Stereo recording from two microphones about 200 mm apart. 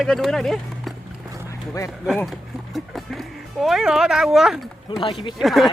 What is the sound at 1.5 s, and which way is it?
Speech, 15° left (ahead or behind).